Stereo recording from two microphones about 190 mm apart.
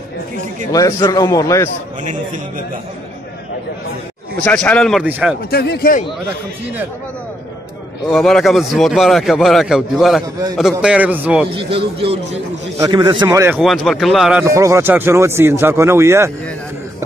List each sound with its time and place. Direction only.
0.7 s a man's voice: 20° left (ahead or behind)
4.4 s a man's voice: 10° left (ahead or behind)
5.5 s a man's voice: 55° left (ahead or behind)
8.1 s a man's voice: centre (ahead or behind)
11.4 s speech: 30° right (ahead or behind)
13.6 s a man's voice: centre (ahead or behind)
14.4 s a man's voice: 15° right (ahead or behind)